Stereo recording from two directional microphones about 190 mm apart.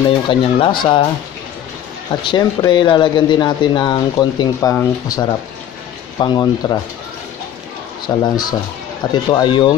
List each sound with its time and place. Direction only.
0.0 s speech: 25° left (ahead or behind)
2.2 s speech: 25° left (ahead or behind)
8.2 s speech: 20° left (ahead or behind)